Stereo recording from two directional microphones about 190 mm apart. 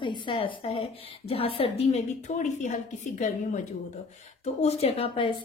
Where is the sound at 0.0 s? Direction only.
25° left (ahead or behind).